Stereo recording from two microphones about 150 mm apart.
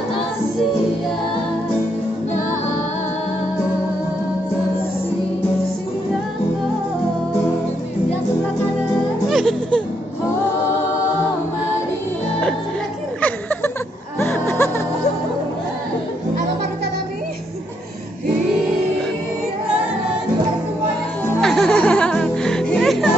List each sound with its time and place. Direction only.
9.3 s music: centre (ahead or behind)
13.2 s a sound: 10° left (ahead or behind)
14.2 s music: 15° left (ahead or behind)
21.4 s music: 5° left (ahead or behind)